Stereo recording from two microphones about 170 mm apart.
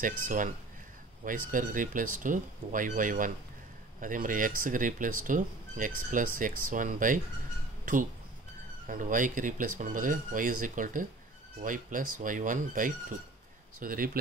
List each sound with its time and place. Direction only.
0.0 s speech: 50° right (ahead or behind)